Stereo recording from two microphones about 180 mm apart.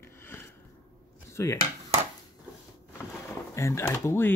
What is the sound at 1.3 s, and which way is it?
Speech, 15° left (ahead or behind).